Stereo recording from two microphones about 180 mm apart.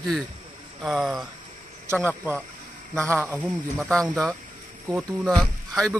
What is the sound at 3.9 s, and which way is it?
Speech, 5° left (ahead or behind).